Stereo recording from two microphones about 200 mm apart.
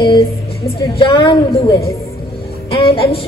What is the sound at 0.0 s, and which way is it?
A woman's voice, 25° left (ahead or behind).